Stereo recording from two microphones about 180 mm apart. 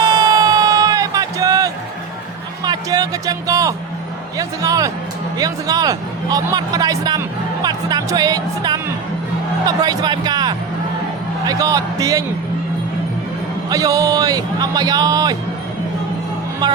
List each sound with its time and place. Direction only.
0.0 s music: 25° right (ahead or behind)
2.6 s speech: 20° right (ahead or behind)
13.7 s speech: 20° right (ahead or behind)
16.6 s speech: 25° right (ahead or behind)